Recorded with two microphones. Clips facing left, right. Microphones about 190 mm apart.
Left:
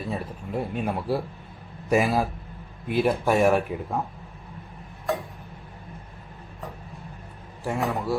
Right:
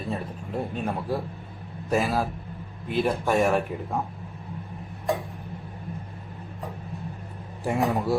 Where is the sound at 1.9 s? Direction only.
10° left (ahead or behind).